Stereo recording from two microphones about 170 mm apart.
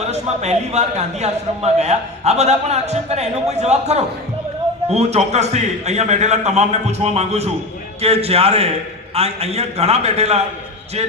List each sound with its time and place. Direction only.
0.0 s a man's voice: 40° right (ahead or behind)